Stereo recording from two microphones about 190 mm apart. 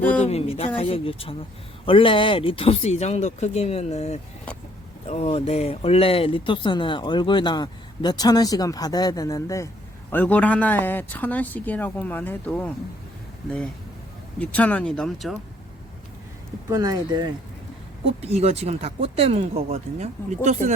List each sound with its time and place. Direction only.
0.0 s a man's voice: 10° left (ahead or behind)
0.3 s a man's voice: 30° left (ahead or behind); by 12.7 s 5° left (ahead or behind)
14.3 s a man's voice: 5° left (ahead or behind)
16.6 s speech: 20° right (ahead or behind)
18.2 s speech: 35° right (ahead or behind)